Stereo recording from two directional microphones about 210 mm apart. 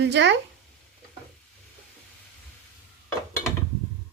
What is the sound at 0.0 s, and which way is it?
Speech, 55° right (ahead or behind).